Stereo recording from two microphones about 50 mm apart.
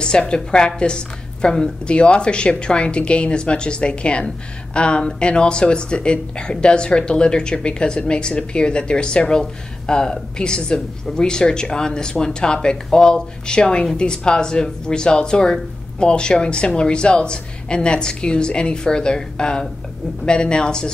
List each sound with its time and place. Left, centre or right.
0.0 s a woman's voice: centre